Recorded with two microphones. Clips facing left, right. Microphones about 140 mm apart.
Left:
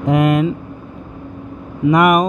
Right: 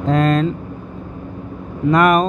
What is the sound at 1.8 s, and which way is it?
Speech, 15° left (ahead or behind).